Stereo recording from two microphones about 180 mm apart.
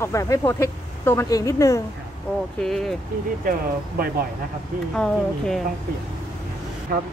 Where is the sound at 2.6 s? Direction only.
Centre (ahead or behind).